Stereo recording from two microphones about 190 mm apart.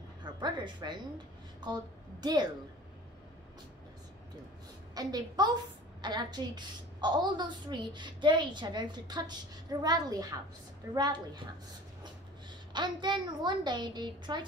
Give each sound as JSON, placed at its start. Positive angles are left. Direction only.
{"t": 0.2, "sound": "a sound", "side_deg": -25}
{"t": 1.6, "sound": "a woman's voice", "side_deg": -20}
{"t": 4.9, "sound": "a woman's voice", "side_deg": -20}
{"t": 12.7, "sound": "a woman's voice", "side_deg": -25}